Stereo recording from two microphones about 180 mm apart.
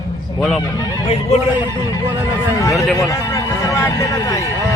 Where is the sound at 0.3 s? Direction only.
Centre (ahead or behind).